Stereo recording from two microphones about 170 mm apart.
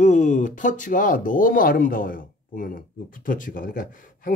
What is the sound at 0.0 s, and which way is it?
Speech, 45° left (ahead or behind).